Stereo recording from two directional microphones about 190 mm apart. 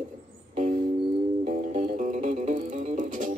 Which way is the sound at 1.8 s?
40° right (ahead or behind).